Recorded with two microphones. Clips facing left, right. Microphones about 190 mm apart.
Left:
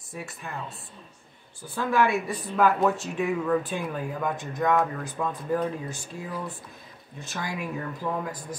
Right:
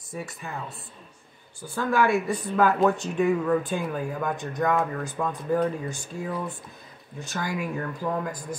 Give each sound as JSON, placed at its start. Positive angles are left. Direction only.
{"t": 0.1, "sound": "speech", "side_deg": 0}
{"t": 1.8, "sound": "speech", "side_deg": 0}
{"t": 7.2, "sound": "speech", "side_deg": 0}